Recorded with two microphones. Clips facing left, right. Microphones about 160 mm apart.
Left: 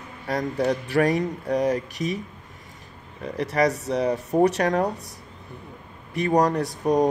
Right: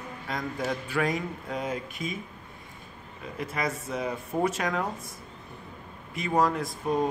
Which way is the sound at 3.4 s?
75° left (ahead or behind).